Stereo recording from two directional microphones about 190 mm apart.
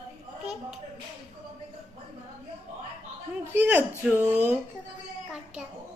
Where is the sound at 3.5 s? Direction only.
10° right (ahead or behind).